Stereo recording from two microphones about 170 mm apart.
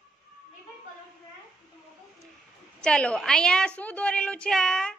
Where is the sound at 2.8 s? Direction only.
5° left (ahead or behind).